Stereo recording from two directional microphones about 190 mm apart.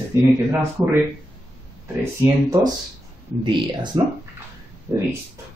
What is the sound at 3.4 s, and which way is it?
Speech, 25° right (ahead or behind).